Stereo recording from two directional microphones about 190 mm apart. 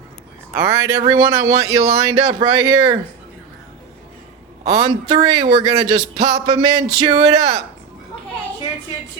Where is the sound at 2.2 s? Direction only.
25° right (ahead or behind).